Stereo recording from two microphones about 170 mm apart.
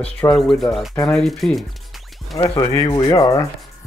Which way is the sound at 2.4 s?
25° left (ahead or behind).